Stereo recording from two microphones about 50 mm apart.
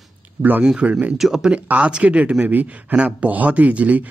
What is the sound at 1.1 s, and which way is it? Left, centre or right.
Speech, centre.